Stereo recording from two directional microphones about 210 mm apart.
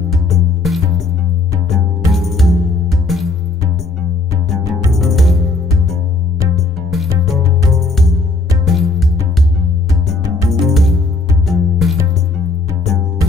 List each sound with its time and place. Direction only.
0.1 s music: centre (ahead or behind)
4.5 s music: centre (ahead or behind)
7.7 s music: centre (ahead or behind)
10.2 s music: 15° right (ahead or behind)
10.6 s music: centre (ahead or behind)